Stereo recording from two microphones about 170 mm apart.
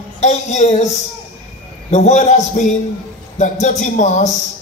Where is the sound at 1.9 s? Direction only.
45° left (ahead or behind).